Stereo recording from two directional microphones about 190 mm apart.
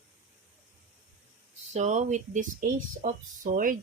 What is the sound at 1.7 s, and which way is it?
Speech, 40° right (ahead or behind).